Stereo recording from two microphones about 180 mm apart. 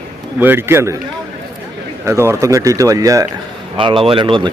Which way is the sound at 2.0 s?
15° right (ahead or behind).